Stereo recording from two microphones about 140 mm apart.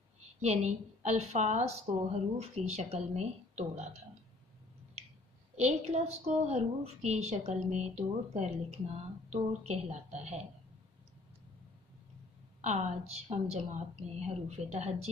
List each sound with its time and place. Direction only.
0.4 s a woman's voice: 55° right (ahead or behind)
5.6 s a woman's voice: 55° right (ahead or behind)
12.6 s a woman's voice: 55° right (ahead or behind)